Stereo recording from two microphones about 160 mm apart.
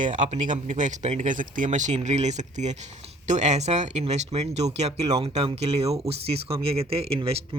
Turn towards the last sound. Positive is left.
turn(degrees=-40)  # may be behind; listen again after turning